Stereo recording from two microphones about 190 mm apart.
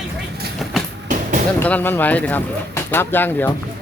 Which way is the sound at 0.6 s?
Centre (ahead or behind).